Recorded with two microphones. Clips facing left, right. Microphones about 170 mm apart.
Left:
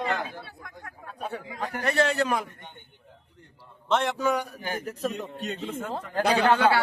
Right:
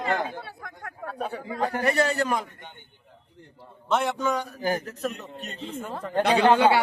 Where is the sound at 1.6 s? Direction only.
35° right (ahead or behind).